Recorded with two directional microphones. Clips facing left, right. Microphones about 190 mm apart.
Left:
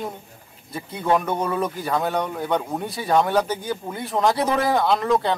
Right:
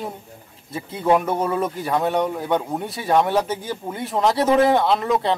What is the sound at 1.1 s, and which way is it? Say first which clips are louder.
Speech: right 2 dB; 5° right (ahead or behind).